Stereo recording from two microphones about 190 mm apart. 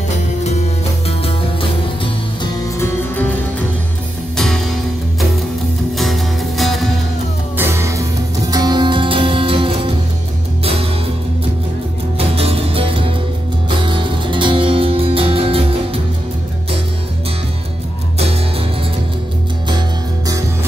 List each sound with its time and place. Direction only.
0.4 s music: 35° left (ahead or behind)
2.4 s music: 15° left (ahead or behind)
4.4 s music: centre (ahead or behind)
5.9 s music: centre (ahead or behind)
7.5 s music: 15° right (ahead or behind)
12.2 s music: 30° right (ahead or behind)